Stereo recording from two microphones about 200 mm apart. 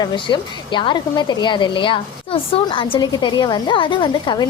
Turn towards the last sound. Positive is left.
turn(degrees=20)  # may be behind; listen again after turning